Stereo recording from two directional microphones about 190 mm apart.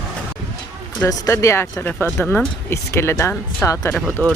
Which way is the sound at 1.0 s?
15° left (ahead or behind).